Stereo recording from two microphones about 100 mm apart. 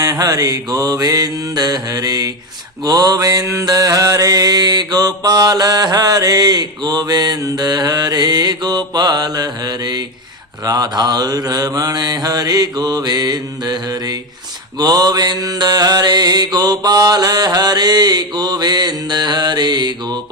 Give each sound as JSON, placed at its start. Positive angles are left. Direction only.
{"t": 0.0, "sound": "mantra", "side_deg": -40}